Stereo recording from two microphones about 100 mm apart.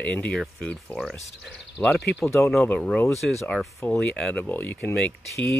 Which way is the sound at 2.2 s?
25° left (ahead or behind).